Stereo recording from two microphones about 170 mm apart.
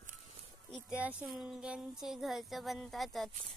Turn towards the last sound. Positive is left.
turn(degrees=0)  # may be behind; listen again after turning